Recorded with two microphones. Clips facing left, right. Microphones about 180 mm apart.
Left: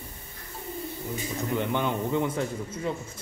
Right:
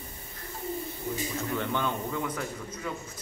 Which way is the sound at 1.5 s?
20° left (ahead or behind).